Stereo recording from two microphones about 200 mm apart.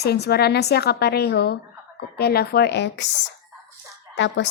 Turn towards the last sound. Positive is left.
turn(degrees=65)  # may be behind; listen again after turning